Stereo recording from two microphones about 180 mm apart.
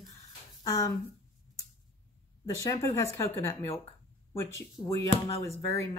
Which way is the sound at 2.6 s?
20° left (ahead or behind).